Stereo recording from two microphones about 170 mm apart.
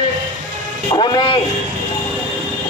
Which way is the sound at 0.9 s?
30° left (ahead or behind).